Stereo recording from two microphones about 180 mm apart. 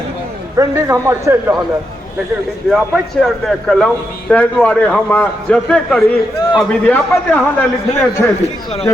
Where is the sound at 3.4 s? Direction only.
Centre (ahead or behind).